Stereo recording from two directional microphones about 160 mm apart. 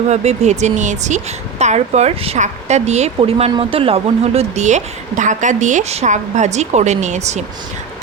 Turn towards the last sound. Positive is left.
turn(degrees=-45)  # may be behind; listen again after turning